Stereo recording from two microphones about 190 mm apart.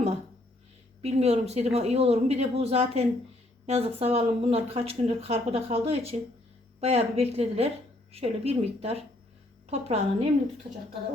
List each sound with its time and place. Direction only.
1.0 s speech: 35° right (ahead or behind)